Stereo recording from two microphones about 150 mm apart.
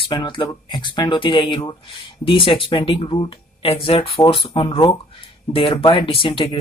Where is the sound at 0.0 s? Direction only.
30° left (ahead or behind).